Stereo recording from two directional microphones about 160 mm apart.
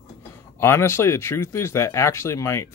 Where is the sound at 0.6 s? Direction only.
15° left (ahead or behind).